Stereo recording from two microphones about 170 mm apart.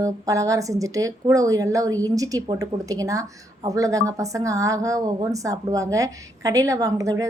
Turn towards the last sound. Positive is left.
turn(degrees=-20)  # may be behind; listen again after turning